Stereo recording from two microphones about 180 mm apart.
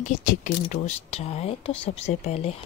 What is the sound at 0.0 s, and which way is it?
Speech, 45° left (ahead or behind).